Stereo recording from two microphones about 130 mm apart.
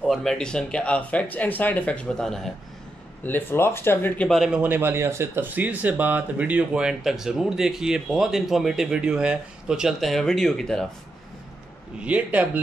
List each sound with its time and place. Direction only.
0.0 s speech: 5° left (ahead or behind)
3.3 s speech: 15° left (ahead or behind)
4.3 s speech: centre (ahead or behind)
4.6 s speech: 15° right (ahead or behind); by 10.9 s 5° left (ahead or behind)
12.0 s speech: 10° right (ahead or behind)